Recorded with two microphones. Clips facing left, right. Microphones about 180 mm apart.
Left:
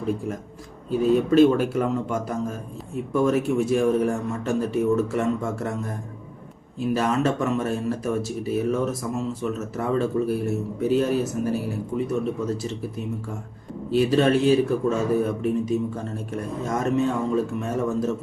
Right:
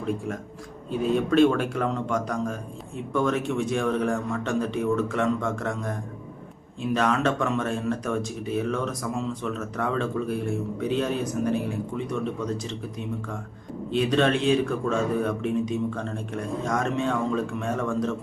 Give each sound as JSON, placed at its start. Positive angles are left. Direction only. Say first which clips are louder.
{"t": 0.9, "sound": "a man's voice", "louder": "left 4 dB", "side_deg": 5}
{"t": 6.7, "sound": "speech", "louder": "left 1 dB", "side_deg": 5}
{"t": 13.9, "sound": "speech", "louder": "left 3 dB", "side_deg": 5}
{"t": 16.8, "sound": "speech", "louder": "left 3 dB", "side_deg": 5}